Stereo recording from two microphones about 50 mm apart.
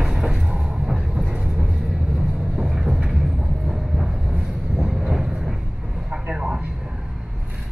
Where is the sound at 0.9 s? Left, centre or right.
Centre.